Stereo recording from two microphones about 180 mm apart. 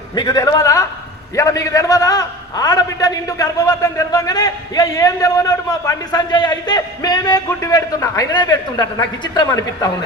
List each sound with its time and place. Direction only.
0.2 s a man's voice: 20° left (ahead or behind)